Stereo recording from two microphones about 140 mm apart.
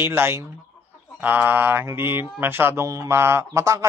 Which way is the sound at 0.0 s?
15° right (ahead or behind).